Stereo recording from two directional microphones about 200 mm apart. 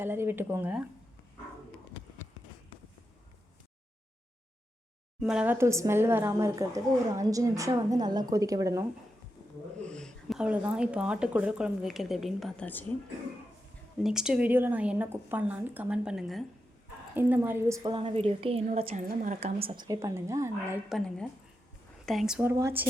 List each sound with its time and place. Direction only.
0.0 s a woman's voice: 10° right (ahead or behind)
5.2 s a woman's voice: 5° right (ahead or behind)
9.8 s speech: 5° left (ahead or behind)
14.0 s a woman's voice: 5° right (ahead or behind)
17.9 s a woman's voice: 30° right (ahead or behind); by 20.8 s 15° right (ahead or behind)
20.9 s a woman's voice: 5° left (ahead or behind); by 22.9 s 10° right (ahead or behind)